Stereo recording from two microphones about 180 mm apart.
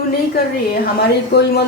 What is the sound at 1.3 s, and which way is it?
Speech, 65° left (ahead or behind).